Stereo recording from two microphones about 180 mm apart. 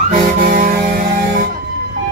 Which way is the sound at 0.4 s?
50° right (ahead or behind).